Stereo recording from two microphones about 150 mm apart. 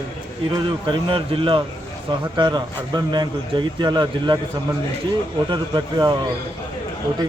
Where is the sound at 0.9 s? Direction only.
35° right (ahead or behind).